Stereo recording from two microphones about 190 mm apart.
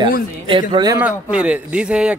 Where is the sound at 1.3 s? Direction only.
5° right (ahead or behind).